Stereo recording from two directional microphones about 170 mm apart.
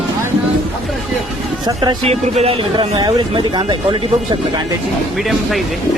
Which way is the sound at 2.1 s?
35° right (ahead or behind).